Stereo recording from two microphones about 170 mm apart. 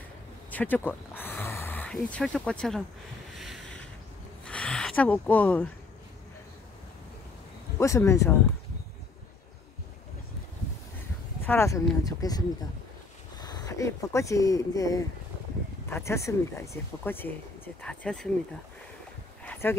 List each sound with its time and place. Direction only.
0.5 s a sound: 10° left (ahead or behind)
2.3 s speech: 5° left (ahead or behind)
3.3 s boat: centre (ahead or behind)
4.5 s a sound: 5° left (ahead or behind)
7.8 s speech: 15° left (ahead or behind)
11.4 s speech: 15° left (ahead or behind)
19.4 s dog: 10° left (ahead or behind)